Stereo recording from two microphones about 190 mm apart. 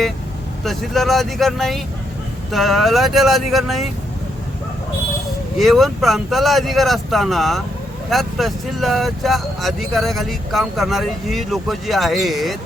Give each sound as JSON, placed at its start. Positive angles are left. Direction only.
{"t": 0.6, "sound": "speech", "side_deg": 0}
{"t": 5.5, "sound": "speech", "side_deg": 0}